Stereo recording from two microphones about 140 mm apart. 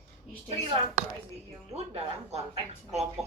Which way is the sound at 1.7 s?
50° right (ahead or behind).